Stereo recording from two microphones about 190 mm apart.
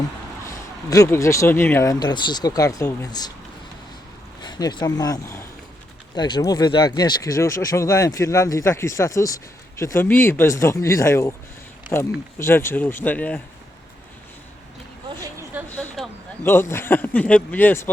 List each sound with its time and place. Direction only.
0.4 s speech: 15° left (ahead or behind)
4.4 s speech: 20° left (ahead or behind)
15.2 s a sound: 15° right (ahead or behind)
15.7 s speech: 10° left (ahead or behind)